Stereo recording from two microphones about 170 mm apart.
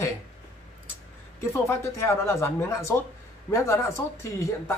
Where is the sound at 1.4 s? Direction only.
15° left (ahead or behind).